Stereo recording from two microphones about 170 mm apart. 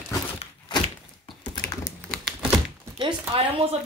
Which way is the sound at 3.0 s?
30° right (ahead or behind).